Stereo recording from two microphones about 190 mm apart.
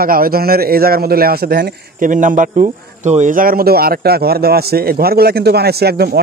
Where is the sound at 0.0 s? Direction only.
50° right (ahead or behind).